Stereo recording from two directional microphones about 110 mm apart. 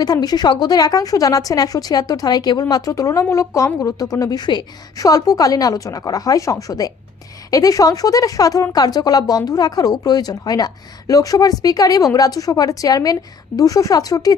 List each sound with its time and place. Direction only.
0.0 s speech: 35° left (ahead or behind)